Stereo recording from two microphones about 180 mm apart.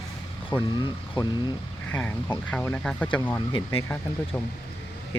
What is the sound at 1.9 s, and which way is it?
Speech, 10° left (ahead or behind).